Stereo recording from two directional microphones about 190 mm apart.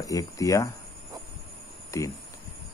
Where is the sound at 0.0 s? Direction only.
15° left (ahead or behind).